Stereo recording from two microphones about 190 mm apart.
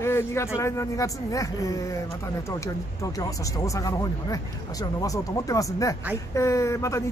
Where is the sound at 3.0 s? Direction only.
20° left (ahead or behind).